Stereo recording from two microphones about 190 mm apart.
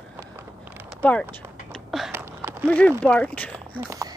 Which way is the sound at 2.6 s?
5° left (ahead or behind).